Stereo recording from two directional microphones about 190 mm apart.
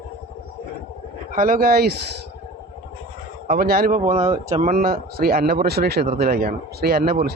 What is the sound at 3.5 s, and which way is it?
Speech, 50° right (ahead or behind).